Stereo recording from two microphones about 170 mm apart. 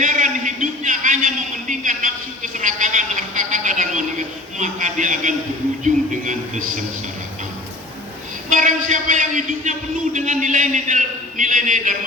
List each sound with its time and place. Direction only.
0.0 s a sound: 50° right (ahead or behind)
5.8 s a man's voice: 50° right (ahead or behind)
8.4 s a man's voice: 50° right (ahead or behind)